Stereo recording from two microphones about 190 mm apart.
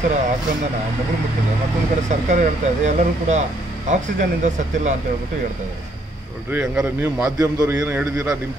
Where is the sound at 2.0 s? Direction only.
40° right (ahead or behind).